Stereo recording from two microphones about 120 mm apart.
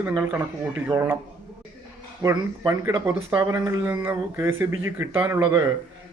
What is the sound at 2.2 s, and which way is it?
Speech, 25° right (ahead or behind).